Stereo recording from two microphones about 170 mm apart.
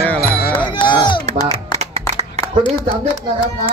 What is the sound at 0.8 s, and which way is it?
Chop, 30° left (ahead or behind).